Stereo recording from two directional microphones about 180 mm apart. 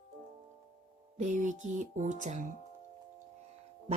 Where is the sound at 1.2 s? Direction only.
45° right (ahead or behind).